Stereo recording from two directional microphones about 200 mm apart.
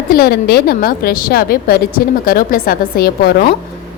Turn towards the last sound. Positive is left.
turn(degrees=50)  # may be behind; listen again after turning